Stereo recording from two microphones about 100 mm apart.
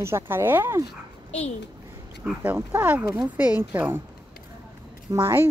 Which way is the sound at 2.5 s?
15° right (ahead or behind).